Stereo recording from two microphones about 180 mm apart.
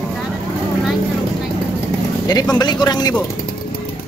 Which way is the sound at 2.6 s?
25° left (ahead or behind).